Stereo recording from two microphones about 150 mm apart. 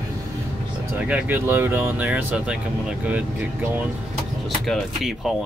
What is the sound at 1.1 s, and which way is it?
Speech, 15° right (ahead or behind).